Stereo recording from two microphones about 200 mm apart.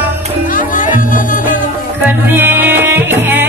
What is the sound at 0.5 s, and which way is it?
Music, 40° left (ahead or behind).